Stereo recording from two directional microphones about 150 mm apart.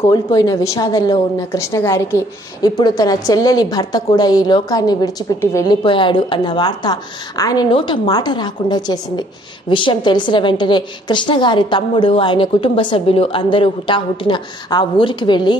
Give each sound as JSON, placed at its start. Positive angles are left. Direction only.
{"t": 0.1, "sound": "a woman's voice", "side_deg": 25}
{"t": 5.9, "sound": "a woman's voice", "side_deg": 35}